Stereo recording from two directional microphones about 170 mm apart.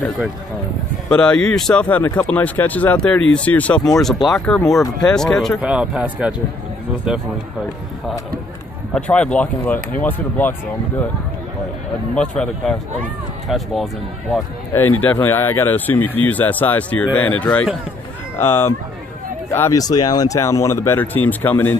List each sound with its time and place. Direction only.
1.0 s speech: 5° left (ahead or behind)
5.6 s speech: 5° right (ahead or behind)
8.9 s speech: 5° left (ahead or behind)
12.2 s speech: 5° left (ahead or behind)
14.7 s speech: 15° left (ahead or behind)